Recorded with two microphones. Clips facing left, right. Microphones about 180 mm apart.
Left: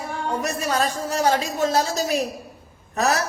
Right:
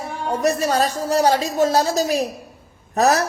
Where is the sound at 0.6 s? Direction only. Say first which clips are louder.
Right 4 dB; 35° right (ahead or behind).